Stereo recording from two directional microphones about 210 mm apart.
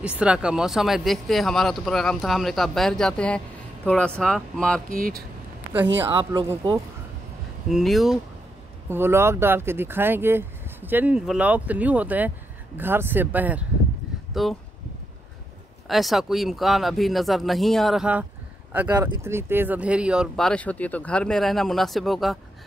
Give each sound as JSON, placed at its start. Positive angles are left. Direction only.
{"t": 0.0, "sound": "speech", "side_deg": -5}
{"t": 4.8, "sound": "speech", "side_deg": -40}
{"t": 6.1, "sound": "speech", "side_deg": -20}
{"t": 7.7, "sound": "speech", "side_deg": 0}
{"t": 8.8, "sound": "speech", "side_deg": -10}
{"t": 15.9, "sound": "speech", "side_deg": 0}